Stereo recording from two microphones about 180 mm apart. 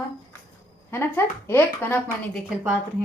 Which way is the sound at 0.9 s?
15° left (ahead or behind).